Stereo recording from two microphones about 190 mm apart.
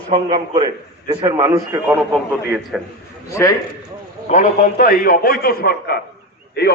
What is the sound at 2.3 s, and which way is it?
Speech, 5° right (ahead or behind).